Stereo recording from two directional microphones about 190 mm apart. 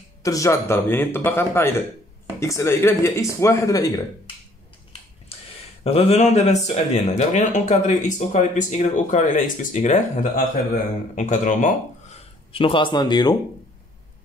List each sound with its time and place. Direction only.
0.2 s a man's voice: 15° left (ahead or behind)
5.3 s a sound: 30° left (ahead or behind)
5.9 s speech: 35° left (ahead or behind)
12.5 s speech: 25° left (ahead or behind)